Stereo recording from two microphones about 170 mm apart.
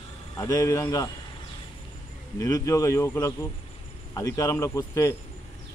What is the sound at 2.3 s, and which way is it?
A man's voice, 20° left (ahead or behind).